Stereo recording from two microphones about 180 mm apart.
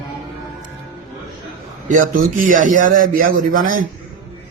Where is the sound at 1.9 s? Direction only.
45° right (ahead or behind).